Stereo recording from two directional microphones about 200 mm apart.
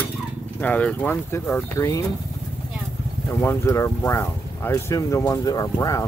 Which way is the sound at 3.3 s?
15° left (ahead or behind).